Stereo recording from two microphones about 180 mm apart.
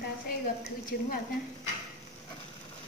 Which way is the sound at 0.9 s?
60° left (ahead or behind).